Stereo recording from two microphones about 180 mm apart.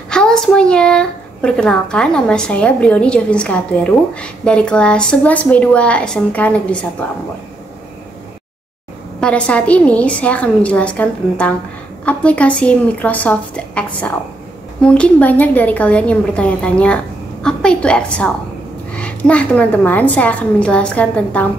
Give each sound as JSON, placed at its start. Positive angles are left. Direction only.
{"t": 0.1, "sound": "speech", "side_deg": 5}
{"t": 9.2, "sound": "a woman's voice", "side_deg": 5}